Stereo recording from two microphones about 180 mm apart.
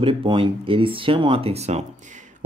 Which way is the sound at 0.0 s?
30° right (ahead or behind).